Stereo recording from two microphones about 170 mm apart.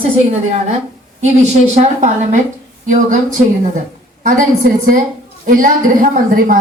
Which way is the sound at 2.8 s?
50° right (ahead or behind).